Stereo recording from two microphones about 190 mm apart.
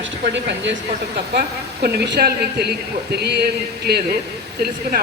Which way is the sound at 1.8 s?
60° right (ahead or behind).